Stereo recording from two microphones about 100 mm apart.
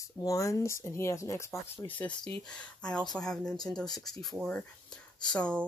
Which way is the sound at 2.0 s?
10° left (ahead or behind).